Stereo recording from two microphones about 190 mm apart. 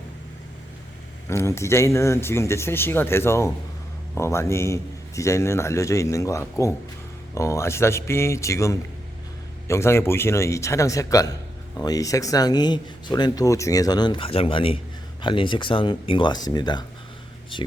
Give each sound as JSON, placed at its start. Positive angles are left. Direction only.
{"t": 1.3, "sound": "a man's voice", "side_deg": 15}